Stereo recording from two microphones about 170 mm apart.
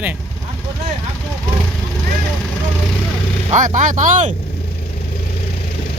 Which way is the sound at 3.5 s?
50° right (ahead or behind).